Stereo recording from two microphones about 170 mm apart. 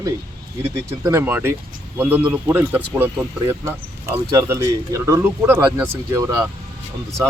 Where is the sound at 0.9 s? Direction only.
15° right (ahead or behind).